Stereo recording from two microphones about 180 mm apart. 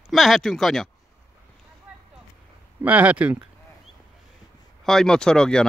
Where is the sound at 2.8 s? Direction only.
10° right (ahead or behind).